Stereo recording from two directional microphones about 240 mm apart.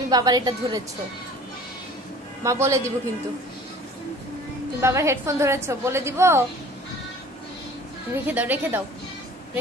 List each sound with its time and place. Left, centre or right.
0.1 s a woman's voice: centre
2.4 s a woman's voice: centre
4.8 s a woman's voice: centre
8.1 s a woman's voice: centre